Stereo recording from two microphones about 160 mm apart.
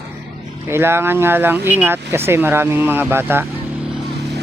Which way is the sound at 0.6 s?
15° right (ahead or behind).